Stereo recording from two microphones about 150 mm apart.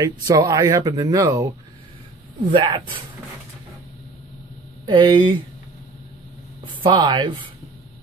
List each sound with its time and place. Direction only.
0.0 s speech: 25° right (ahead or behind)
2.5 s speech: 30° right (ahead or behind)
4.8 s speech: 30° right (ahead or behind)
6.8 s speech: 30° right (ahead or behind)